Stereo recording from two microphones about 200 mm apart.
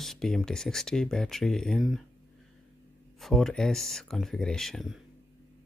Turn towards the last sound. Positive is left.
turn(degrees=0)  # may be behind; listen again after turning